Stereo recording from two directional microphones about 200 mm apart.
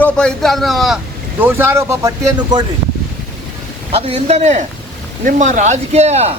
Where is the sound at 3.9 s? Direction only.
30° right (ahead or behind).